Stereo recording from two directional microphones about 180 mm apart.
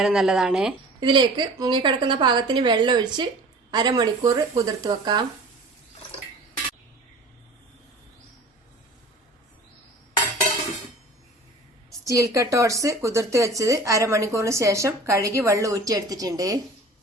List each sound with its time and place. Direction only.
0.0 s speech: centre (ahead or behind)
0.9 s a woman's voice: 25° right (ahead or behind)
12.0 s a woman's voice: 15° right (ahead or behind)